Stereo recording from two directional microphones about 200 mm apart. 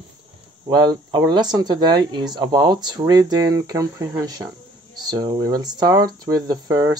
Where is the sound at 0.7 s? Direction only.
20° right (ahead or behind).